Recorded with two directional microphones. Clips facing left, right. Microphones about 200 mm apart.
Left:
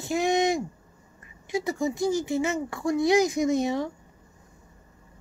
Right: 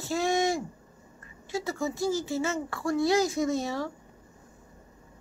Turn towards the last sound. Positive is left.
turn(degrees=20)  # may be behind; listen again after turning